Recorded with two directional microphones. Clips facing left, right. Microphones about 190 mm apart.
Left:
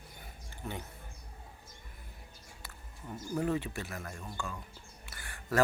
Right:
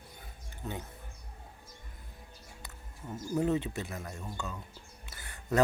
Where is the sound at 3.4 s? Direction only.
20° right (ahead or behind).